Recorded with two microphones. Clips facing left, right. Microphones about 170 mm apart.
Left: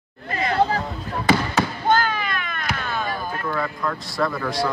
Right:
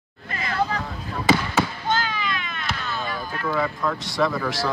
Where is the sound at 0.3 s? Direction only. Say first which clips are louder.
Left 5 dB; 35° left (ahead or behind).